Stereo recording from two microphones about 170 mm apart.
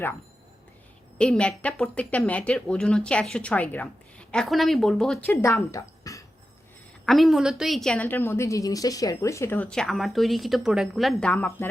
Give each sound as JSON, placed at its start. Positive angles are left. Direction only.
{"t": 1.2, "sound": "a woman's voice", "side_deg": 5}
{"t": 5.3, "sound": "speech", "side_deg": 15}
{"t": 7.0, "sound": "a woman's voice", "side_deg": 0}